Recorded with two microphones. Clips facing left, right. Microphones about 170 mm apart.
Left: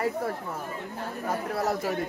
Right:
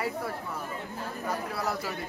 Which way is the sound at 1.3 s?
45° left (ahead or behind).